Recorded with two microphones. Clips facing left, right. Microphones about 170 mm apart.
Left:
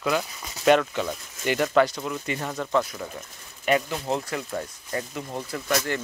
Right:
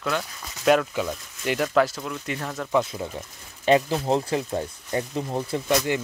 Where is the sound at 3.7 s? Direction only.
30° right (ahead or behind).